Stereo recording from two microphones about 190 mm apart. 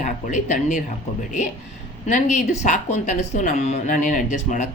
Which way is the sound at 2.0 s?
40° left (ahead or behind).